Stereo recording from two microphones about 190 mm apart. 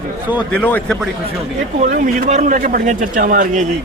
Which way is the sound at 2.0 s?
40° right (ahead or behind).